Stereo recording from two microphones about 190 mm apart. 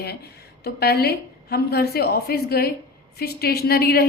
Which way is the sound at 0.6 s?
55° left (ahead or behind).